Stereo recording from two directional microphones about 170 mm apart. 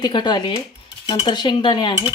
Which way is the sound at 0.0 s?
25° left (ahead or behind).